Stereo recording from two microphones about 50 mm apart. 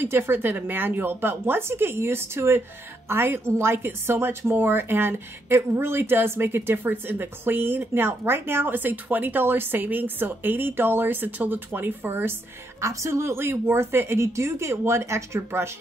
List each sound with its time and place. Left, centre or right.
0.0 s a woman's voice: right
12.8 s speech: right